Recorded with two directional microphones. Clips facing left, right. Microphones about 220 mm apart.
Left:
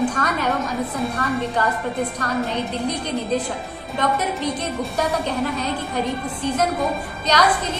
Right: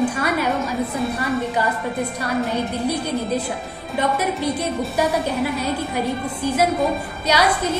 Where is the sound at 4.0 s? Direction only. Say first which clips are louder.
Right 1 dB; 10° right (ahead or behind).